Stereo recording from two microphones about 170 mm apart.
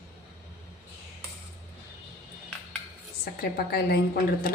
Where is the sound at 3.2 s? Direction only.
65° left (ahead or behind).